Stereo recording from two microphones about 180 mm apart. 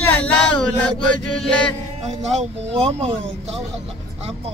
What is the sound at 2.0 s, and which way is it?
Speech, 35° right (ahead or behind).